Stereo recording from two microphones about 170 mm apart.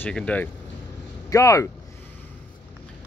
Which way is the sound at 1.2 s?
20° left (ahead or behind).